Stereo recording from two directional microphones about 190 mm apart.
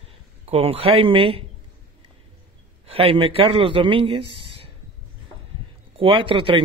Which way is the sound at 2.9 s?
30° right (ahead or behind).